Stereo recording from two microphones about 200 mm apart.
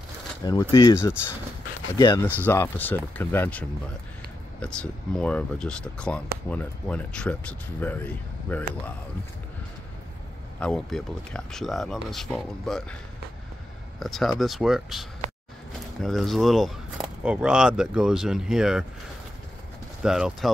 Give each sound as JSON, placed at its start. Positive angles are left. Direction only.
{"t": 0.4, "sound": "speech", "side_deg": 20}
{"t": 10.6, "sound": "speech", "side_deg": 0}
{"t": 13.9, "sound": "speech", "side_deg": 0}
{"t": 20.0, "sound": "speech", "side_deg": -5}